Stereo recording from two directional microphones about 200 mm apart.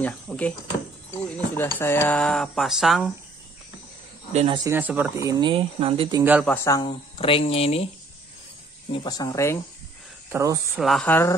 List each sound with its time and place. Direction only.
0.0 s speech: 5° left (ahead or behind)
4.3 s speech: 35° right (ahead or behind)
4.6 s speech: 10° right (ahead or behind); by 6.2 s 25° right (ahead or behind)
6.4 s speech: 10° left (ahead or behind); by 7.8 s 30° left (ahead or behind)
8.9 s speech: 20° left (ahead or behind)
10.3 s speech: 15° right (ahead or behind)
10.8 s speech: centre (ahead or behind)